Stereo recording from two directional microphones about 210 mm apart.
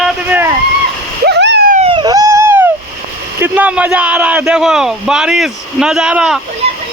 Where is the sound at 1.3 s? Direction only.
55° right (ahead or behind).